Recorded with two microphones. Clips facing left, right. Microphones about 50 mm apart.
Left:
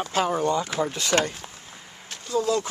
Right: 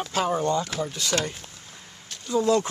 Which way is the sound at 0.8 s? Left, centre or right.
Left.